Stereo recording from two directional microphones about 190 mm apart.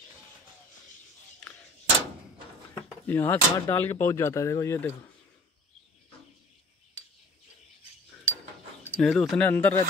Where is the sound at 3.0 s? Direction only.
10° left (ahead or behind).